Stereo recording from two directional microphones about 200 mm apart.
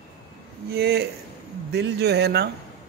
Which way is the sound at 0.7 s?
55° right (ahead or behind).